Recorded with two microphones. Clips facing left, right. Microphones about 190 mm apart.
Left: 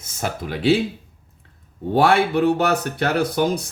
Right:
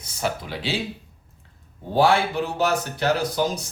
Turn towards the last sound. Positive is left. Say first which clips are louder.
# left 3 dB
turn(degrees=60)  # may be behind; listen again after turning